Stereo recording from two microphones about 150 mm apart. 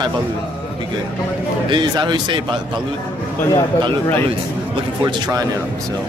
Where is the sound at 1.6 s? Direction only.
30° right (ahead or behind).